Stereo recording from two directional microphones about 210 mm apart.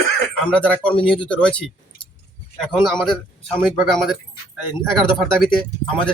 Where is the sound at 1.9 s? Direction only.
50° left (ahead or behind).